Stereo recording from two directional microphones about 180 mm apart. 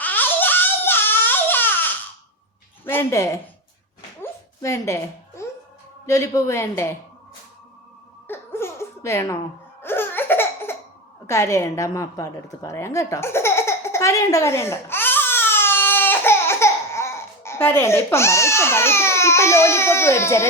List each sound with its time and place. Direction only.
0.0 s crying: 10° left (ahead or behind)
2.8 s a woman's voice: 10° left (ahead or behind)
4.2 s a sound: 15° left (ahead or behind)
6.1 s speech: 15° left (ahead or behind)
8.3 s giggle: 15° left (ahead or behind)
9.8 s laughter: 10° left (ahead or behind)
11.3 s a woman's voice: 15° left (ahead or behind)